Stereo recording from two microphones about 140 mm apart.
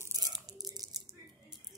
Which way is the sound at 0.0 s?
25° right (ahead or behind).